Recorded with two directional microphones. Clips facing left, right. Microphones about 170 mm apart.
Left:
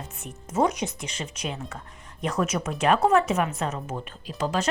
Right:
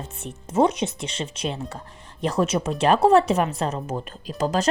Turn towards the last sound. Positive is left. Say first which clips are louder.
# right 4 dB
turn(degrees=-40)  # may be behind; listen again after turning